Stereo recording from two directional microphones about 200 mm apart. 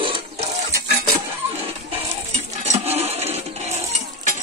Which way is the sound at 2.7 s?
30° right (ahead or behind).